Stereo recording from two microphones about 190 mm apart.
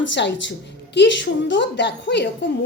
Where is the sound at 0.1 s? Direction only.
70° left (ahead or behind).